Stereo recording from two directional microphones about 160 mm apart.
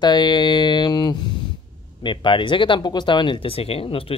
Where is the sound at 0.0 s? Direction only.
25° left (ahead or behind).